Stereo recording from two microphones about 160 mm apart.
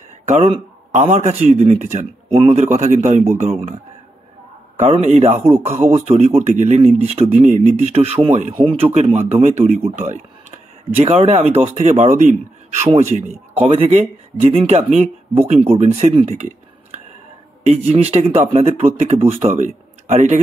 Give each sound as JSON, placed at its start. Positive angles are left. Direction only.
{"t": 0.9, "sound": "speech", "side_deg": -50}
{"t": 4.7, "sound": "speech", "side_deg": -45}